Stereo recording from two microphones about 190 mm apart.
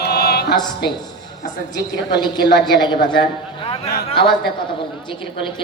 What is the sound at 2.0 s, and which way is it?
A woman's voice, 20° left (ahead or behind).